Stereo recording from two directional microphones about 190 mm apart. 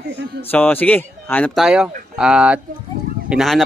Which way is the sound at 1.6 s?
5° right (ahead or behind).